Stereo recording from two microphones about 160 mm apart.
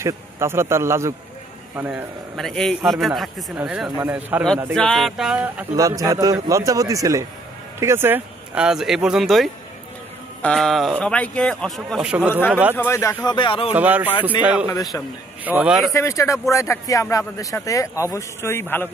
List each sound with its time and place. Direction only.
0.0 s a man's voice: 15° right (ahead or behind)
1.9 s a man's voice: centre (ahead or behind)
4.7 s a man's voice: 5° left (ahead or behind)
5.8 s a man's voice: 20° right (ahead or behind)
12.7 s speech: 15° left (ahead or behind); by 13.7 s 35° left (ahead or behind)
13.7 s a man's voice: 10° right (ahead or behind)
15.9 s speech: 20° left (ahead or behind)